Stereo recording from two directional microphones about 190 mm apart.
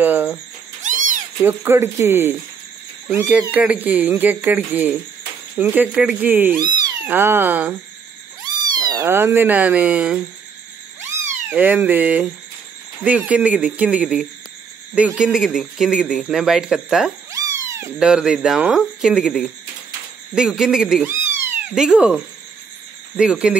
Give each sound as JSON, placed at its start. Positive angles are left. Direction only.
{"t": 0.0, "sound": "speech", "side_deg": -10}
{"t": 0.8, "sound": "cat", "side_deg": -45}
{"t": 1.4, "sound": "speech", "side_deg": -10}
{"t": 6.6, "sound": "speech", "side_deg": -20}
{"t": 7.1, "sound": "speech", "side_deg": -10}
{"t": 8.5, "sound": "speech", "side_deg": -20}
{"t": 17.3, "sound": "cat", "side_deg": -15}
{"t": 17.9, "sound": "speech", "side_deg": -5}